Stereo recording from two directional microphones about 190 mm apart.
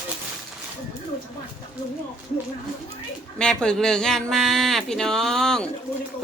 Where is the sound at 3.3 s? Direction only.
5° left (ahead or behind).